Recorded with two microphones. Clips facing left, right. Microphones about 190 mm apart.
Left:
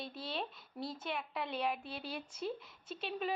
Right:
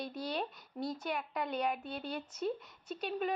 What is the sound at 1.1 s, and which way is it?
A woman's voice, 5° left (ahead or behind).